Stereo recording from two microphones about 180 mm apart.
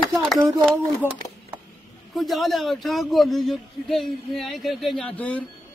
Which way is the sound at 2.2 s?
Centre (ahead or behind).